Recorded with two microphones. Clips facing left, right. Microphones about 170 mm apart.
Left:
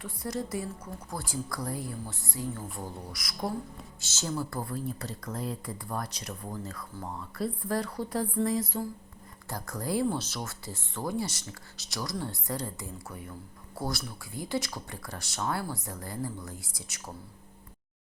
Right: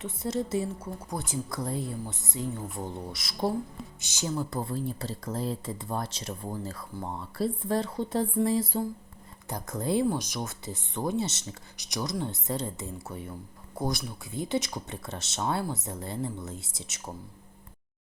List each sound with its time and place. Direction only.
0.0 s speech: 25° right (ahead or behind)
4.0 s speech: 15° right (ahead or behind)